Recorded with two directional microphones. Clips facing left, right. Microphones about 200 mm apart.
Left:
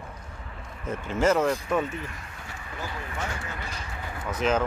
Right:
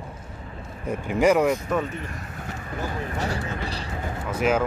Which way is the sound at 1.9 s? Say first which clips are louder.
Right 2 dB; 35° right (ahead or behind).